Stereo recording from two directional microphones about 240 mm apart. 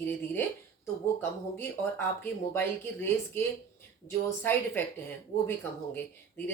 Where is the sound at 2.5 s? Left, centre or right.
Centre.